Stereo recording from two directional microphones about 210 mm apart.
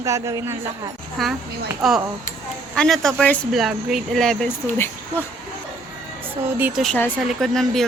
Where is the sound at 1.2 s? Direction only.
Centre (ahead or behind).